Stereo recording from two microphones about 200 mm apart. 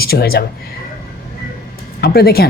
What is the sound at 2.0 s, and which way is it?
Speech, 50° left (ahead or behind).